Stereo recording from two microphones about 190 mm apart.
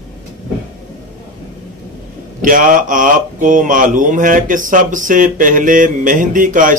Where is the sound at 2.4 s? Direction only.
45° right (ahead or behind).